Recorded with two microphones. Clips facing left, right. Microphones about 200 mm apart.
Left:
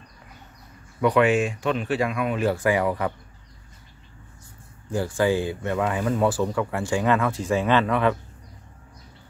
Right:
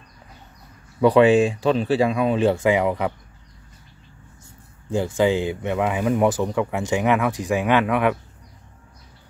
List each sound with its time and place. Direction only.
1.0 s speech: 30° right (ahead or behind)
4.9 s speech: 20° right (ahead or behind)